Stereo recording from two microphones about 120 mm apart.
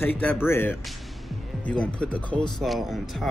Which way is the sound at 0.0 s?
15° left (ahead or behind).